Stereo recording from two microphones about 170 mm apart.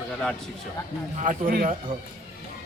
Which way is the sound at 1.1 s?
50° right (ahead or behind).